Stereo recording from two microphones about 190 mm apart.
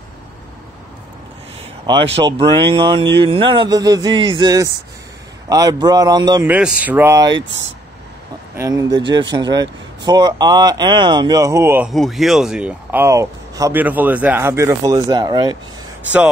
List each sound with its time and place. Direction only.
2.1 s speech: 30° right (ahead or behind)
6.5 s speech: 10° right (ahead or behind)
8.5 s speech: 20° right (ahead or behind)
11.9 s speech: centre (ahead or behind); by 15.5 s 20° right (ahead or behind)